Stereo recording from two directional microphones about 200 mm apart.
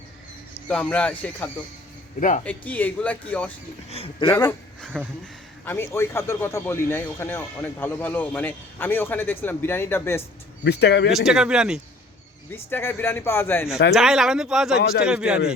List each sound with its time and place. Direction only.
0.7 s speech: 5° left (ahead or behind)
3.8 s speech: 30° left (ahead or behind)
4.3 s speech: 15° left (ahead or behind)
4.9 s speech: 5° left (ahead or behind)
10.6 s speech: 55° left (ahead or behind)
11.3 s speech: 5° right (ahead or behind)
12.5 s speech: 10° left (ahead or behind)
13.9 s speech: centre (ahead or behind)